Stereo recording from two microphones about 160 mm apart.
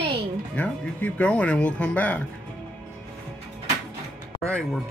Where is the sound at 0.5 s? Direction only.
10° left (ahead or behind).